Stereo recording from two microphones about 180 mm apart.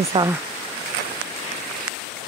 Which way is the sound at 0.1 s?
25° right (ahead or behind).